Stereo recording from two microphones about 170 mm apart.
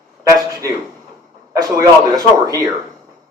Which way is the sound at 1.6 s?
20° right (ahead or behind).